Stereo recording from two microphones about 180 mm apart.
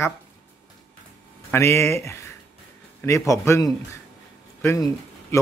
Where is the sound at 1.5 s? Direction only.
15° left (ahead or behind).